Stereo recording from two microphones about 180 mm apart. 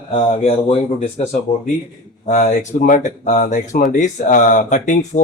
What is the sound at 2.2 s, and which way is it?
Speech, 45° left (ahead or behind).